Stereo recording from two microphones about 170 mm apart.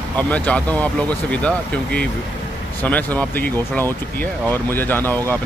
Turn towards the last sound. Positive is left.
turn(degrees=10)  # may be behind; listen again after turning